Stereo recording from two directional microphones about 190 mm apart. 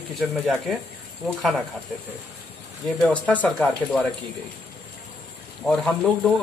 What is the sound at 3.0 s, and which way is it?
Speech, 5° left (ahead or behind).